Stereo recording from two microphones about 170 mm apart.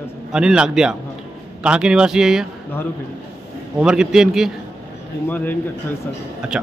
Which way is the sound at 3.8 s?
5° right (ahead or behind).